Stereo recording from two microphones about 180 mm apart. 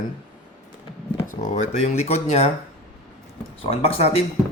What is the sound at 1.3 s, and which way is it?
Speech, 40° left (ahead or behind).